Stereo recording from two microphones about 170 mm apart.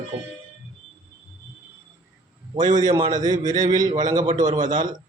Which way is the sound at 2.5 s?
25° right (ahead or behind).